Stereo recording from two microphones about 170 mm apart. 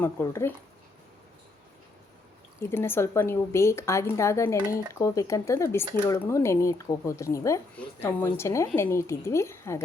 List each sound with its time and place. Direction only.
0.0 s speech: 15° left (ahead or behind)
2.6 s speech: 15° left (ahead or behind)